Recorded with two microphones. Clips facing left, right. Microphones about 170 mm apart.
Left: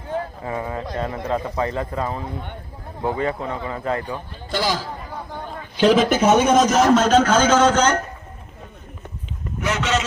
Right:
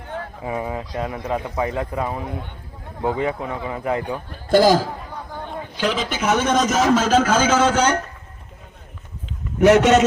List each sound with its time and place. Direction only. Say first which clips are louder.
0.4 s speech: right 1 dB; 15° right (ahead or behind)
4.4 s a man's voice: right 10 dB; 45° right (ahead or behind)
5.9 s speech: left 9 dB; 45° left (ahead or behind)
6.2 s speech: left 2 dB; 20° left (ahead or behind)
6.5 s a man's voice: left 2 dB; centre (ahead or behind)
9.6 s a man's voice: right 10 dB; 60° right (ahead or behind)